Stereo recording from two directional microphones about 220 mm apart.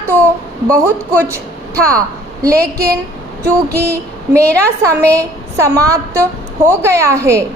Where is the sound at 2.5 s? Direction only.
45° right (ahead or behind).